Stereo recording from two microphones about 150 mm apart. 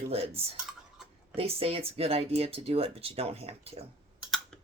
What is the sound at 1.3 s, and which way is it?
Speech, 40° right (ahead or behind).